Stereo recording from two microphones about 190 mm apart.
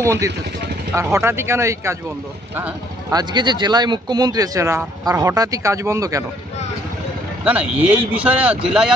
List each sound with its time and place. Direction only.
0.0 s speech: 15° right (ahead or behind)
7.4 s speech: 5° right (ahead or behind)